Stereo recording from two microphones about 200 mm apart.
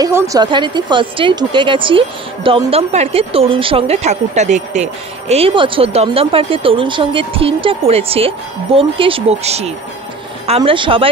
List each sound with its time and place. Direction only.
0.0 s speech: 15° right (ahead or behind)